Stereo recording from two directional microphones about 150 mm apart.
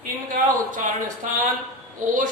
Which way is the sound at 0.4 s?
65° right (ahead or behind).